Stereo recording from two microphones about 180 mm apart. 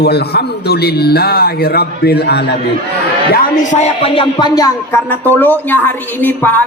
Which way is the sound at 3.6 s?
40° left (ahead or behind).